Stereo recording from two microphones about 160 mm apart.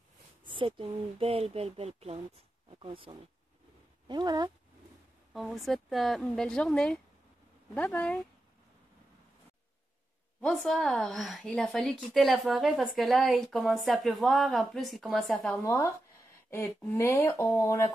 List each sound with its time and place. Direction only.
0.5 s speech: 30° right (ahead or behind)
5.3 s a woman's voice: centre (ahead or behind)
10.4 s a woman's voice: centre (ahead or behind)
15.6 s speech: 20° left (ahead or behind)